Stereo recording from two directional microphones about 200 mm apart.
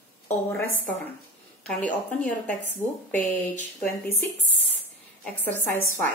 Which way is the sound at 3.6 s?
50° left (ahead or behind).